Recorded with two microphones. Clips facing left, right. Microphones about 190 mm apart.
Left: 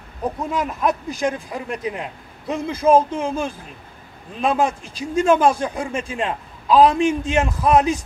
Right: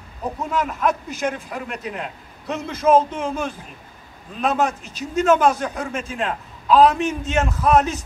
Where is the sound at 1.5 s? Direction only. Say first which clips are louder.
Left 3 dB; 15° left (ahead or behind).